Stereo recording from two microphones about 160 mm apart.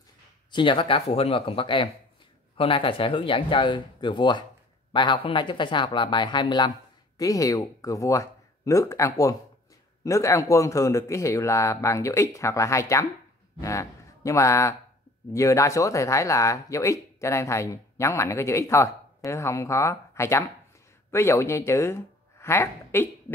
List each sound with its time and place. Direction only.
0.5 s a man's voice: 30° left (ahead or behind); by 23.0 s 15° left (ahead or behind)